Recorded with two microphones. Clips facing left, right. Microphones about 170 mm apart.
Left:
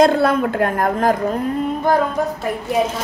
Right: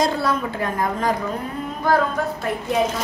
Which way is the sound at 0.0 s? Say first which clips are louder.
Left 7 dB; 60° left (ahead or behind).